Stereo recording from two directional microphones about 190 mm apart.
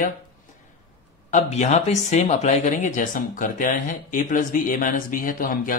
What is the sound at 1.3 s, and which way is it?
Speech, 40° left (ahead or behind).